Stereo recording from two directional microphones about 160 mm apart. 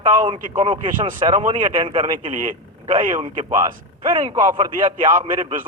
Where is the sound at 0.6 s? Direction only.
35° right (ahead or behind).